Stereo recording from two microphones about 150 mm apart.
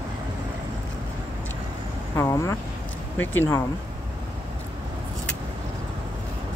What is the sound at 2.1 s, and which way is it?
Speech, 20° left (ahead or behind).